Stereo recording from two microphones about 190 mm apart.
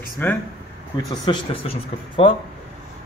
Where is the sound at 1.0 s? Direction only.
25° left (ahead or behind).